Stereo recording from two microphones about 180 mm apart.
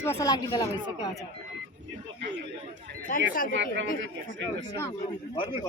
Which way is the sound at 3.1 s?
55° left (ahead or behind).